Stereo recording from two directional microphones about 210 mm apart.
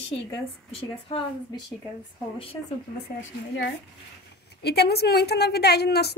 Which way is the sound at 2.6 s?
15° left (ahead or behind).